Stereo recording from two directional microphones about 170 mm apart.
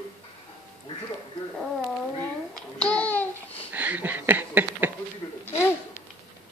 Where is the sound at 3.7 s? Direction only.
10° right (ahead or behind).